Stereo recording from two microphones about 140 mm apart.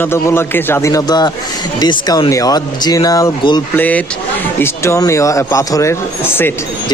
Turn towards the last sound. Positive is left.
turn(degrees=15)  # may be behind; listen again after turning